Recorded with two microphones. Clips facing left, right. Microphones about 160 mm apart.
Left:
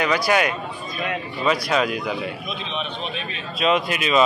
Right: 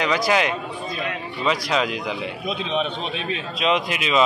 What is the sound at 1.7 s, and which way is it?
Speech, 20° right (ahead or behind).